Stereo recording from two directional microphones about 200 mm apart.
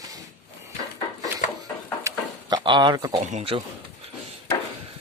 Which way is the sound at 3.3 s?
30° right (ahead or behind).